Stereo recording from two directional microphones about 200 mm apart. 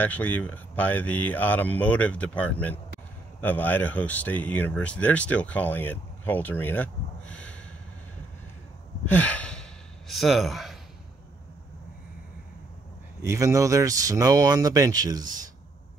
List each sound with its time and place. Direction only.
0.0 s speech: 10° left (ahead or behind)
9.0 s sigh: 10° left (ahead or behind)
13.2 s speech: 15° right (ahead or behind)